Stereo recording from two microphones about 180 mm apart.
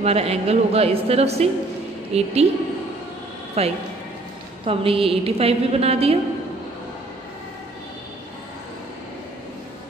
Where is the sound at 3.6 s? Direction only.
35° right (ahead or behind).